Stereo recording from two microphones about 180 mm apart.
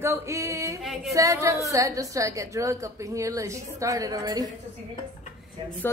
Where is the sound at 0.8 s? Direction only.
Centre (ahead or behind).